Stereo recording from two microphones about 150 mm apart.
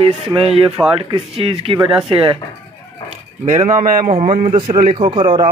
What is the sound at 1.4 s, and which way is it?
Speech, 35° right (ahead or behind).